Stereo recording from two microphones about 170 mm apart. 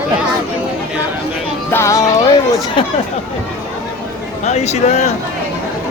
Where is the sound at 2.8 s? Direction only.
30° left (ahead or behind).